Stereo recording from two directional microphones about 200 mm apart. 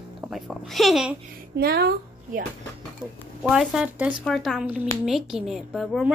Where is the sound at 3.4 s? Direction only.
Centre (ahead or behind).